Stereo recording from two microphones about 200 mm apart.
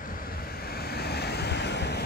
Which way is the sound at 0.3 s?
50° left (ahead or behind).